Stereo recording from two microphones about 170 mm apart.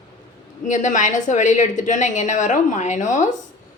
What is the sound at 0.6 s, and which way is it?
A woman's voice, 45° left (ahead or behind).